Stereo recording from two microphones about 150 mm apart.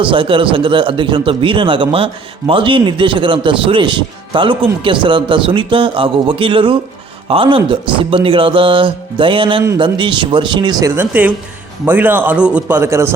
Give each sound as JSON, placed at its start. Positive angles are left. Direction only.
{"t": 0.0, "sound": "speech", "side_deg": -35}
{"t": 10.9, "sound": "a man's voice", "side_deg": -10}